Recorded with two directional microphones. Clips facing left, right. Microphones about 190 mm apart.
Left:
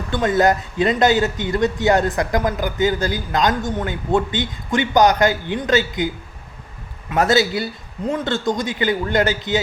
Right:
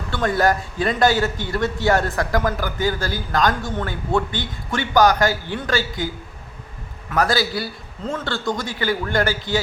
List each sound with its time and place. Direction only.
0.1 s a man's voice: 20° left (ahead or behind)
7.1 s a man's voice: 25° left (ahead or behind)